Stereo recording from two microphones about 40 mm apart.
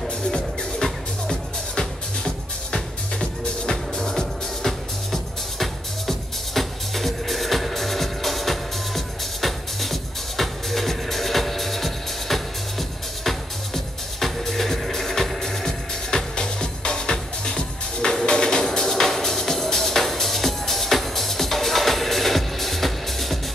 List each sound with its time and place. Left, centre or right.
0.3 s music: centre